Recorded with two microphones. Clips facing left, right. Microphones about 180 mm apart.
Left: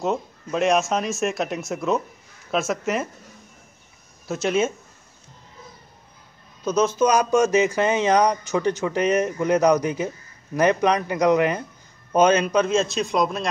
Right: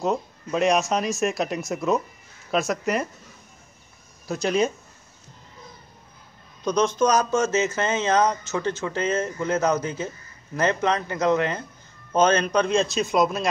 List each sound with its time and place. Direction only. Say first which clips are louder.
0.0 s speech: even; centre (ahead or behind)
4.3 s speech: left 1 dB; centre (ahead or behind)
6.6 s speech: left 1 dB; 5° left (ahead or behind)